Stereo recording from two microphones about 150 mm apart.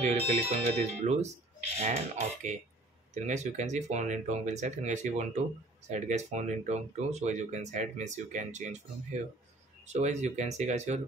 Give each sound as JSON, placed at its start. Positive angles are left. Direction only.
{"t": 0.0, "sound": "speech", "side_deg": -45}
{"t": 9.8, "sound": "speech", "side_deg": -50}